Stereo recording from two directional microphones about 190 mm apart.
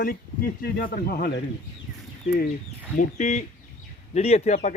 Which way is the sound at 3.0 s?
40° left (ahead or behind).